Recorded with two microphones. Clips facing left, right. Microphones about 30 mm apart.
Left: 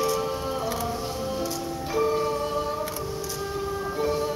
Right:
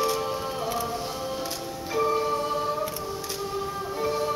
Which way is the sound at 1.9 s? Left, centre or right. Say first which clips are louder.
Even; centre.